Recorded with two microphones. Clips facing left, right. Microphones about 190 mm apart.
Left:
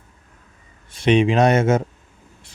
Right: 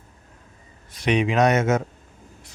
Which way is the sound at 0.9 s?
25° left (ahead or behind).